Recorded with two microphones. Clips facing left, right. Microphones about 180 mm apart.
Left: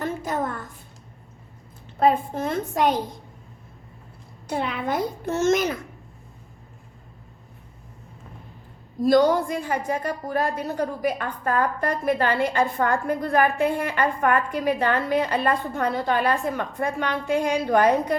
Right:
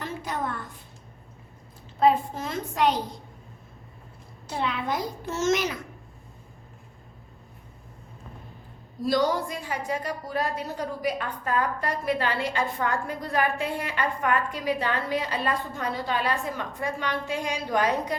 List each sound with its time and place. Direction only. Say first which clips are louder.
0.0 s a sound: left 5 dB; 45° left (ahead or behind)
2.0 s a woman's voice: left 1 dB; 55° left (ahead or behind)
4.4 s a child's voice: left 3 dB; 55° left (ahead or behind)
9.0 s a woman's voice: left 6 dB; 50° left (ahead or behind)